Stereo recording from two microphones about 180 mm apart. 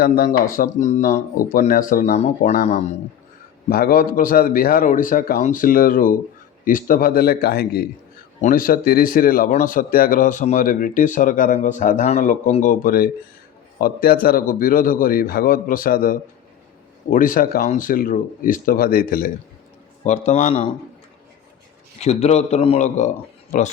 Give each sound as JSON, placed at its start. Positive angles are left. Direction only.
{"t": 0.5, "sound": "a man's voice", "side_deg": 45}
{"t": 3.7, "sound": "speech", "side_deg": 55}
{"t": 8.4, "sound": "speech", "side_deg": 50}
{"t": 20.1, "sound": "a man's voice", "side_deg": 40}
{"t": 22.0, "sound": "a man's voice", "side_deg": 40}